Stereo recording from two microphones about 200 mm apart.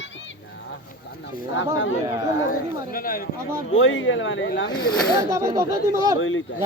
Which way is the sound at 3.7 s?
75° left (ahead or behind).